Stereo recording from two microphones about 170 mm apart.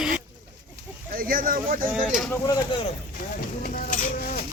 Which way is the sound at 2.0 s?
5° right (ahead or behind).